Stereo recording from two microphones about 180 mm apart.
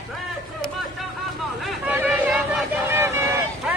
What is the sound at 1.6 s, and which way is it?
Hubbub, centre (ahead or behind).